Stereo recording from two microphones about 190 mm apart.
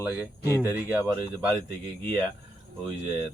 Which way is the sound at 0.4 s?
15° left (ahead or behind).